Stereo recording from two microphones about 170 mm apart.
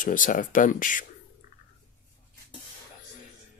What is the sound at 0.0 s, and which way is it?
Speech, 50° left (ahead or behind).